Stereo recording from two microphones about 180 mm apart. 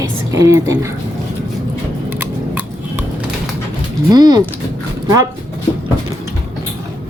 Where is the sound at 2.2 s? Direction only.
10° right (ahead or behind).